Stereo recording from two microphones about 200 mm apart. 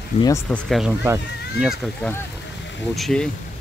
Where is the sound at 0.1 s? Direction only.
35° left (ahead or behind).